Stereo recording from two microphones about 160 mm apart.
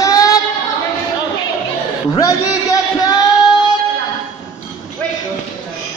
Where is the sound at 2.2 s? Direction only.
20° left (ahead or behind).